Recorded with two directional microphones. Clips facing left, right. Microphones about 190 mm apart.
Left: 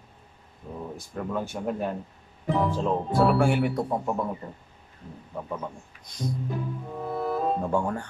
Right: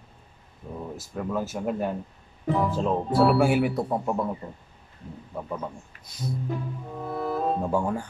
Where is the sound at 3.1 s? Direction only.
5° right (ahead or behind).